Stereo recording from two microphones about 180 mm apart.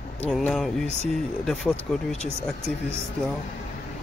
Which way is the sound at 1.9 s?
5° left (ahead or behind).